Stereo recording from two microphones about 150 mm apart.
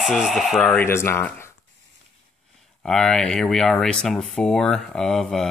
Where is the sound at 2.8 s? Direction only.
5° left (ahead or behind).